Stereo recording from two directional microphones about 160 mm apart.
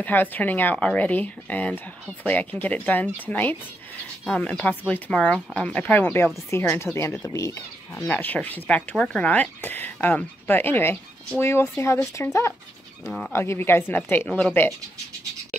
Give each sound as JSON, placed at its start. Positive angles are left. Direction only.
{"t": 0.0, "sound": "speech", "side_deg": 10}